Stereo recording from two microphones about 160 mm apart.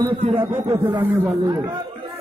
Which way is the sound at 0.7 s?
15° right (ahead or behind).